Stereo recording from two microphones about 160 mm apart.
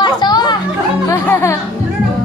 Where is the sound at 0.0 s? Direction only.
25° left (ahead or behind).